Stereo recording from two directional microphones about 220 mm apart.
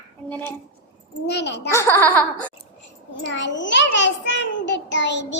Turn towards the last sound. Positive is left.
turn(degrees=55)  # may be behind; listen again after turning